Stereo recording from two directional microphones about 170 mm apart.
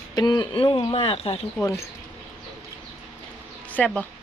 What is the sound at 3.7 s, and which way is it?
Speech, 10° left (ahead or behind).